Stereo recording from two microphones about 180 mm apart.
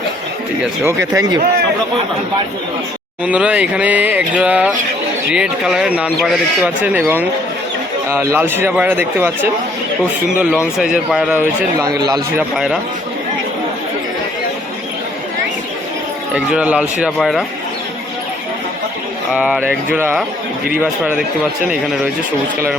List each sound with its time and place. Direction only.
0.6 s speech: 15° right (ahead or behind)
3.2 s speech: 5° right (ahead or behind)
11.8 s speech: 20° right (ahead or behind)
12.4 s speech: 5° right (ahead or behind)
16.3 s speech: 5° right (ahead or behind)
19.3 s speech: 5° right (ahead or behind)